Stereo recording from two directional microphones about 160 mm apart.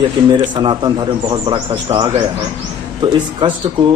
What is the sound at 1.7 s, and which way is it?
A man's voice, 35° right (ahead or behind).